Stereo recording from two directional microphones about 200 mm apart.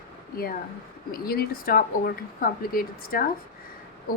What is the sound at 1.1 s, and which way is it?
A woman's voice, 50° left (ahead or behind).